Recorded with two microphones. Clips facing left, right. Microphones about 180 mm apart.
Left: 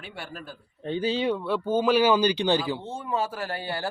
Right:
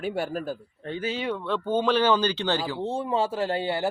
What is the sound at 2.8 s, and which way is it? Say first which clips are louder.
Speech: right 4 dB; 30° right (ahead or behind).